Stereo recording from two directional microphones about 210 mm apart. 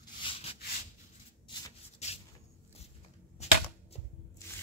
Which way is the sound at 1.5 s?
30° left (ahead or behind).